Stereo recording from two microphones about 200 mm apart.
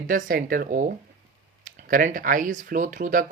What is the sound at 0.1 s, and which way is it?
Speech, 45° right (ahead or behind).